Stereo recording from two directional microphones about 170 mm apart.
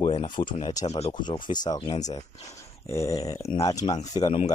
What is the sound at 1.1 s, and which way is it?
Speech, 25° left (ahead or behind).